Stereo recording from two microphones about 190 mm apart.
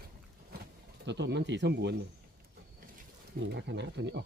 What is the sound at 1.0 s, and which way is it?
Speech, 65° right (ahead or behind).